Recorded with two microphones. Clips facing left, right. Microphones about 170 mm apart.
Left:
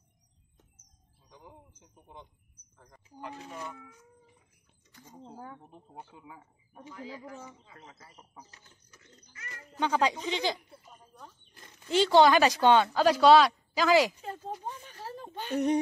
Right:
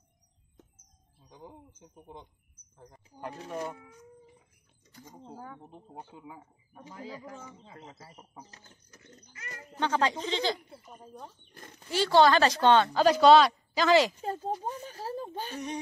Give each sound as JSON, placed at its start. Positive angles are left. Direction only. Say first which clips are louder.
{"t": 3.2, "sound": "speech", "louder": "right 5 dB", "side_deg": -45}
{"t": 5.6, "sound": "speech", "louder": "right 2 dB", "side_deg": -20}
{"t": 6.4, "sound": "speech", "louder": "left 1 dB", "side_deg": -35}
{"t": 8.5, "sound": "bird", "louder": "right 4 dB", "side_deg": -40}
{"t": 9.8, "sound": "a woman's voice", "louder": "even", "side_deg": 10}
{"t": 11.9, "sound": "a woman's voice", "louder": "left 1 dB", "side_deg": 20}
{"t": 14.2, "sound": "speech", "louder": "right 5 dB", "side_deg": -40}
{"t": 15.5, "sound": "speech", "louder": "left 13 dB", "side_deg": 55}